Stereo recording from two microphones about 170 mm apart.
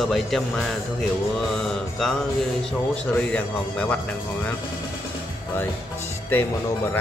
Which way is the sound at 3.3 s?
10° left (ahead or behind).